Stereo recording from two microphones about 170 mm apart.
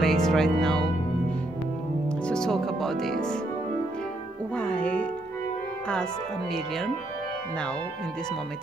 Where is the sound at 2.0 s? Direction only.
5° left (ahead or behind).